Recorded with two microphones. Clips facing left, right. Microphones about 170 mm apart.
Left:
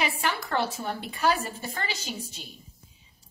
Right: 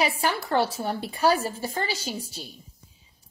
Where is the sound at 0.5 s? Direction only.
35° right (ahead or behind).